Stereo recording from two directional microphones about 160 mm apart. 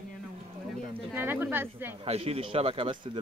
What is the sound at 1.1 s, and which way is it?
Speech, 10° right (ahead or behind).